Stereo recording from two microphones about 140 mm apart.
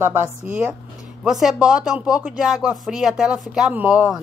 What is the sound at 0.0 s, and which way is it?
Speech, 15° right (ahead or behind).